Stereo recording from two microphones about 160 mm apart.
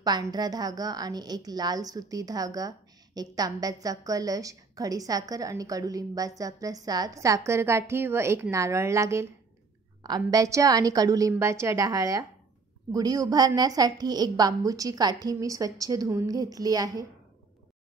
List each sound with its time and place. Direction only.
0.0 s a woman's voice: 25° right (ahead or behind)
10.3 s a woman's voice: 20° right (ahead or behind)